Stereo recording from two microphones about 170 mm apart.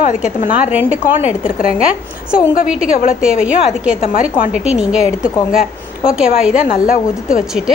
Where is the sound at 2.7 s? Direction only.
5° right (ahead or behind).